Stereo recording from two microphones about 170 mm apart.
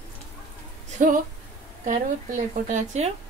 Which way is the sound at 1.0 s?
50° right (ahead or behind).